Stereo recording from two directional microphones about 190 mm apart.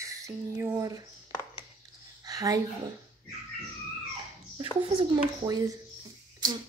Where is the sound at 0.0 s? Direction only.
15° right (ahead or behind).